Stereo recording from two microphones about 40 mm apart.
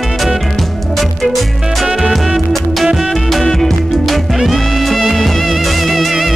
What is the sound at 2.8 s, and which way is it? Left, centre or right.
Music, centre.